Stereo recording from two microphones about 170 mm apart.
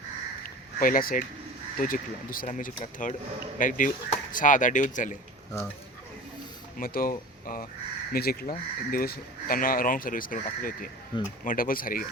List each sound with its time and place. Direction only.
0.4 s a sound: 55° left (ahead or behind)
1.8 s speech: 55° left (ahead or behind)
6.7 s speech: 55° left (ahead or behind)
11.1 s speech: 25° left (ahead or behind)
11.4 s speech: 55° left (ahead or behind)